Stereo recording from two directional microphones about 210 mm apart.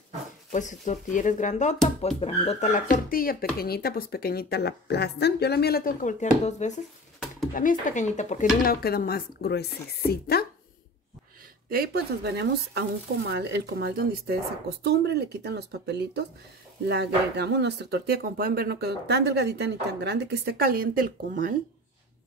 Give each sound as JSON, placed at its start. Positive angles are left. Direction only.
{"t": 0.5, "sound": "speech", "side_deg": 35}
{"t": 11.7, "sound": "speech", "side_deg": -45}